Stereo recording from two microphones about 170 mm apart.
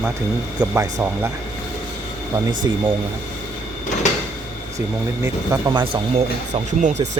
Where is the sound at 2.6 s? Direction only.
20° right (ahead or behind).